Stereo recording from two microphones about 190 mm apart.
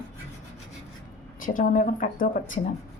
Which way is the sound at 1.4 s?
45° left (ahead or behind).